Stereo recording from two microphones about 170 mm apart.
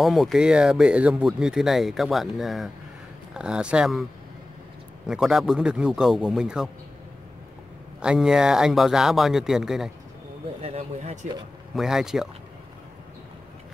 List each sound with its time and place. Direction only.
0.0 s speech: centre (ahead or behind)
5.0 s speech: 5° right (ahead or behind)
8.0 s speech: 5° right (ahead or behind)
10.6 s speech: 40° right (ahead or behind)
11.7 s speech: 5° right (ahead or behind)